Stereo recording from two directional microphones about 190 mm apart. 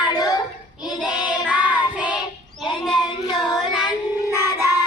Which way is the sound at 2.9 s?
25° left (ahead or behind).